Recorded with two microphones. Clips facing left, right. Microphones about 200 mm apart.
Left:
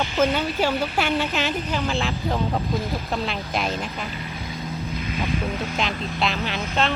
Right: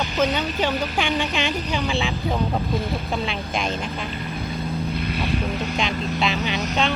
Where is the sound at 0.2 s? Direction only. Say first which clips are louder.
Left 1 dB; 5° left (ahead or behind).